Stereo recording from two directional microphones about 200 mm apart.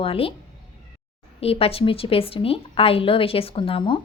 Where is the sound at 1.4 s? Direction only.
30° left (ahead or behind).